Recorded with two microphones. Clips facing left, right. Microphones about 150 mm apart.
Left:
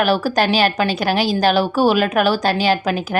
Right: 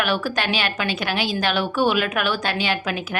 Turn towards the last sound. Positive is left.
turn(degrees=40)  # may be behind; listen again after turning